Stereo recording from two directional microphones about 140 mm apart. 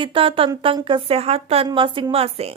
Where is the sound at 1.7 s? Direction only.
35° right (ahead or behind).